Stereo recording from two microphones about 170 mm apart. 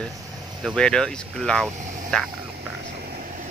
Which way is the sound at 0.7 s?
5° left (ahead or behind).